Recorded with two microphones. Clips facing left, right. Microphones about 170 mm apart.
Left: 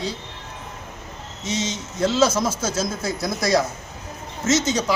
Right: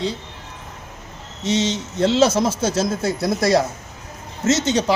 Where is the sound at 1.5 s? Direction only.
70° right (ahead or behind).